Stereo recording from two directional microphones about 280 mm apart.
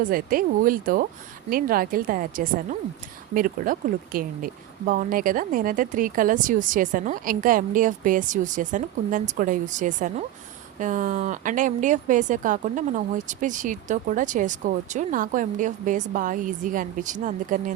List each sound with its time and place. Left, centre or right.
0.0 s a woman's voice: right